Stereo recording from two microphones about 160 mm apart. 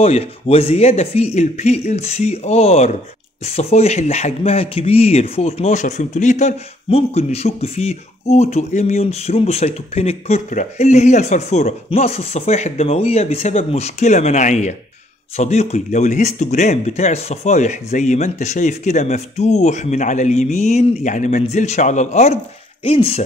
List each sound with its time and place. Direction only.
0.0 s speech: 40° left (ahead or behind)